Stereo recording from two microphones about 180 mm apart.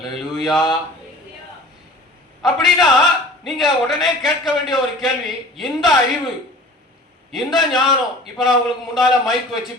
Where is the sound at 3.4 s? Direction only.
Centre (ahead or behind).